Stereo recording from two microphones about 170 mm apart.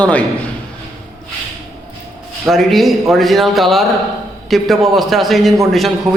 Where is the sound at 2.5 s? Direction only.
Centre (ahead or behind).